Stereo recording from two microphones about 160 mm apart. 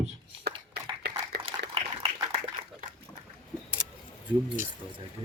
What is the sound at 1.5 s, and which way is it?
Dog, 35° right (ahead or behind).